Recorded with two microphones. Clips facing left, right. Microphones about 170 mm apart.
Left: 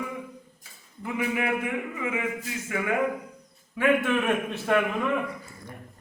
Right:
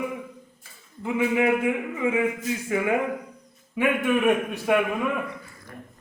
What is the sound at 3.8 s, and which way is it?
A man's voice, 15° right (ahead or behind).